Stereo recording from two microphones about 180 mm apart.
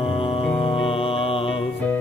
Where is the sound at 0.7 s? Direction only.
30° left (ahead or behind).